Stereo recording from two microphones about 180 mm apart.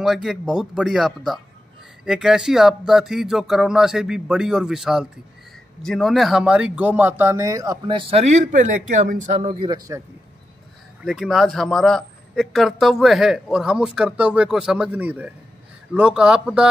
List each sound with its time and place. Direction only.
0.0 s a man's voice: centre (ahead or behind); by 9.8 s 30° right (ahead or behind)
11.0 s a man's voice: centre (ahead or behind)